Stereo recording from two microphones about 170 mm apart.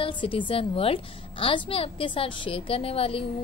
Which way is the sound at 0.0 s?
30° left (ahead or behind).